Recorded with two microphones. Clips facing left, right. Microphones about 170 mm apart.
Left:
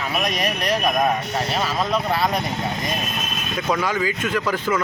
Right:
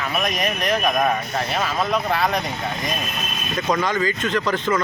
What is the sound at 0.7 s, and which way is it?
Speech, centre (ahead or behind).